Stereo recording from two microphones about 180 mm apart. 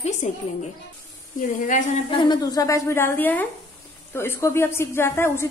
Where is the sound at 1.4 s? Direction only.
45° left (ahead or behind).